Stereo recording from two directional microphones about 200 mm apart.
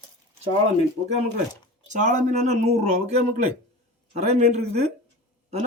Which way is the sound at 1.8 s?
40° right (ahead or behind).